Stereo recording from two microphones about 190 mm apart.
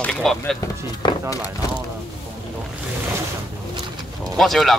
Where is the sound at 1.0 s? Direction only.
25° left (ahead or behind).